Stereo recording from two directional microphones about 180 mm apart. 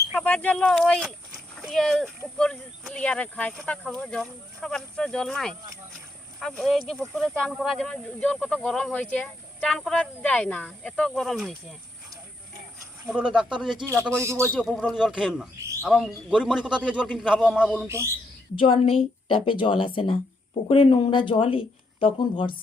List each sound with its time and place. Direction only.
0.1 s speech: 5° left (ahead or behind)
6.6 s speech: centre (ahead or behind)
13.1 s speech: 5° right (ahead or behind)
13.8 s a man's voice: 15° right (ahead or behind)
14.6 s speech: 5° left (ahead or behind)
15.6 s bird: 15° right (ahead or behind)
15.9 s speech: centre (ahead or behind)
17.8 s a man's voice: 15° right (ahead or behind)
18.5 s speech: 30° left (ahead or behind)